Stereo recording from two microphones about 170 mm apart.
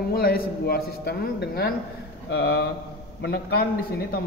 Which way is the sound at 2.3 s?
80° left.